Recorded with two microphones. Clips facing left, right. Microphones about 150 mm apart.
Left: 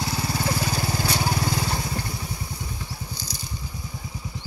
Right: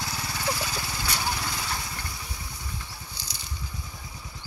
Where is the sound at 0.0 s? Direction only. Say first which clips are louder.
Left 5 dB; 30° left (ahead or behind).